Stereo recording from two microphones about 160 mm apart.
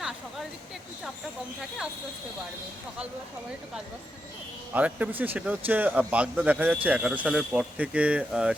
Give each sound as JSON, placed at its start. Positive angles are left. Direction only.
{"t": 4.7, "sound": "speech", "side_deg": -10}